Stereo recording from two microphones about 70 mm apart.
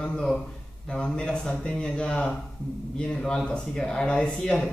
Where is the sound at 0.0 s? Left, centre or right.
Centre.